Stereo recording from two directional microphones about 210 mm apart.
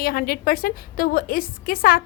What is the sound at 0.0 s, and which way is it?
A woman's voice, 45° left (ahead or behind).